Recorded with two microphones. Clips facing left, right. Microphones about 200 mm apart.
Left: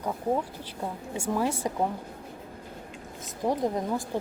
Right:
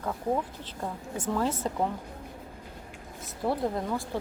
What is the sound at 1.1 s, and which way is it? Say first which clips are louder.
Speech: left 1 dB; 10° left (ahead or behind).